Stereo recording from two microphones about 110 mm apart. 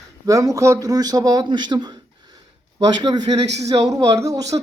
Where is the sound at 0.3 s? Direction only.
30° right (ahead or behind).